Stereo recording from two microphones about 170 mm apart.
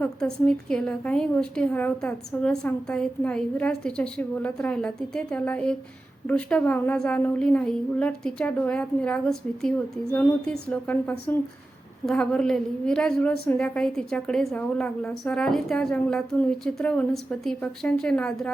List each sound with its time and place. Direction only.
0.0 s a woman's voice: 5° left (ahead or behind)